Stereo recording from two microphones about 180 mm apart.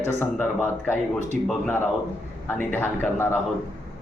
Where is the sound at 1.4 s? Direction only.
5° left (ahead or behind).